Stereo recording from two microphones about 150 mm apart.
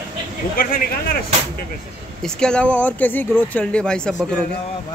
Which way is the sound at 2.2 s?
5° left (ahead or behind).